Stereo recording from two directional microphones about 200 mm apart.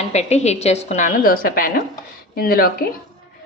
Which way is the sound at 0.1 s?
35° left (ahead or behind).